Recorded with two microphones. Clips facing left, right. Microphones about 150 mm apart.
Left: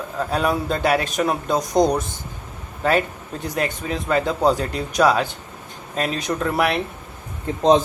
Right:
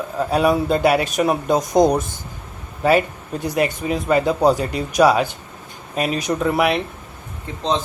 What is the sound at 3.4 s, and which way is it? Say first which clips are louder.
A man's voice: right 4 dB; 10° right (ahead or behind).